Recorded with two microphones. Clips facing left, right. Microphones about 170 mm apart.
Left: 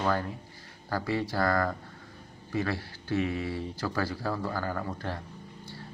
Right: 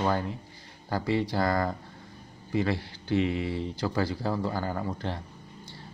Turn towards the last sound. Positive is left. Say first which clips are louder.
# right 2 dB
turn(degrees=-15)  # may be behind; listen again after turning